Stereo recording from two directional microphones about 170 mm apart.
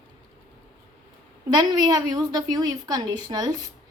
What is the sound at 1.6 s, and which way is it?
A woman's voice, 25° right (ahead or behind).